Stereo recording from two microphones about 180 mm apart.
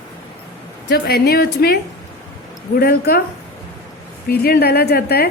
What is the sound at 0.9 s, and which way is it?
Speech, 65° left (ahead or behind).